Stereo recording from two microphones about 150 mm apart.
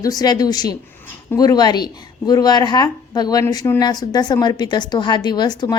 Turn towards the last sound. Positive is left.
turn(degrees=30)  # may be behind; listen again after turning